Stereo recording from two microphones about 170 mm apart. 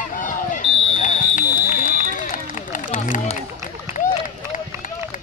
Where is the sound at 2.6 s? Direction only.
50° left (ahead or behind).